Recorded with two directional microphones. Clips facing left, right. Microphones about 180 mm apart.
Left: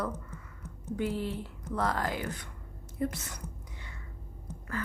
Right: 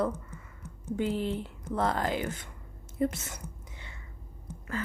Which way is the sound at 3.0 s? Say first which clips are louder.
Right 4 dB; 25° right (ahead or behind).